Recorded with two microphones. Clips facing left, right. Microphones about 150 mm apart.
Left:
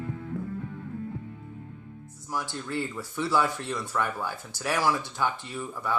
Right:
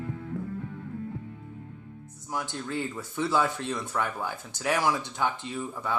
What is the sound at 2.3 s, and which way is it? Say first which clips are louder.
Speech: even; 20° right (ahead or behind).